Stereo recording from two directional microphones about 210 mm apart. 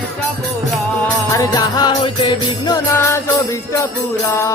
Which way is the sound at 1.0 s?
15° left (ahead or behind).